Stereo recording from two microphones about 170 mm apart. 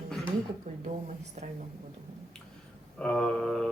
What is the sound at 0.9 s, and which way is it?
Speech, 40° right (ahead or behind).